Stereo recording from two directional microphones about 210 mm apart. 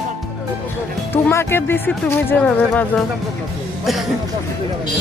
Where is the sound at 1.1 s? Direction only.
10° left (ahead or behind).